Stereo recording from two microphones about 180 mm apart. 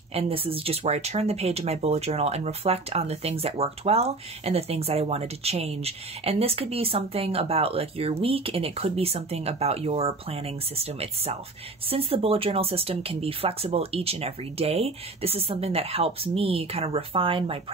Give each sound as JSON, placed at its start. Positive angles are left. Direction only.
{"t": 0.1, "sound": "speech", "side_deg": -35}